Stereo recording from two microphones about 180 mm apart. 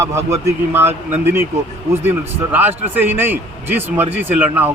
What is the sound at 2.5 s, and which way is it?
A man's voice, 10° right (ahead or behind).